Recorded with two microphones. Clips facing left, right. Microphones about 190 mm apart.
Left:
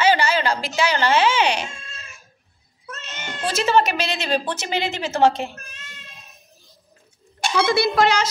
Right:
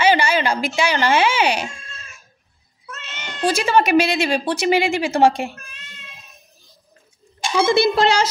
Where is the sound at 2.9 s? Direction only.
40° left (ahead or behind).